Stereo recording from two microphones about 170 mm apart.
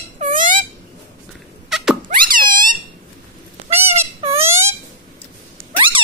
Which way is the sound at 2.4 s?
55° right (ahead or behind).